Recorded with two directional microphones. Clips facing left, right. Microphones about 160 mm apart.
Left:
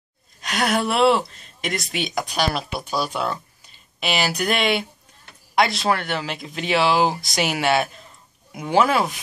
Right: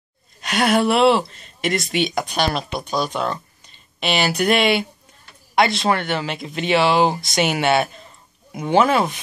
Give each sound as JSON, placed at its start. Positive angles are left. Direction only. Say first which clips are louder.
{"t": 0.4, "sound": "speech", "louder": "right 4 dB", "side_deg": 0}